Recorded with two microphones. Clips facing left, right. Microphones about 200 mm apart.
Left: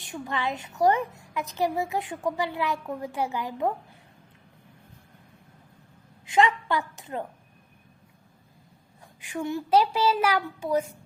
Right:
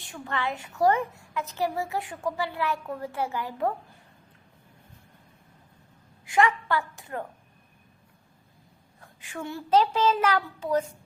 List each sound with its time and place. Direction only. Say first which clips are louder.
0.0 s a woman's voice: left 1 dB; 15° left (ahead or behind)
6.2 s a woman's voice: left 1 dB; 20° left (ahead or behind)
9.2 s a woman's voice: left 5 dB; 15° left (ahead or behind)